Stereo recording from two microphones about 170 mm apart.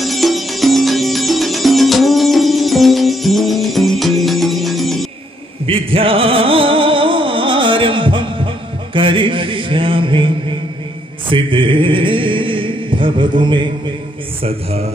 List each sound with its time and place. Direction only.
0.0 s music: centre (ahead or behind)
5.7 s music: 30° right (ahead or behind)
8.9 s mantra: 30° right (ahead or behind)